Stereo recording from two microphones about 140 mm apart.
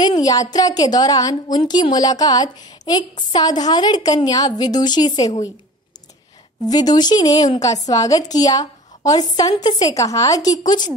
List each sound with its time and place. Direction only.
0.0 s a woman's voice: 30° left (ahead or behind)
6.7 s a woman's voice: 30° left (ahead or behind)